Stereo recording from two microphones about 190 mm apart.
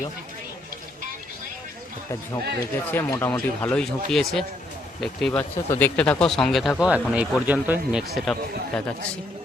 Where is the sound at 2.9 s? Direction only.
15° left (ahead or behind); by 8.0 s 5° right (ahead or behind).